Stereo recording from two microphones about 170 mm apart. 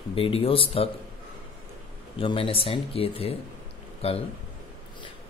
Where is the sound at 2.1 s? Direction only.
30° left (ahead or behind).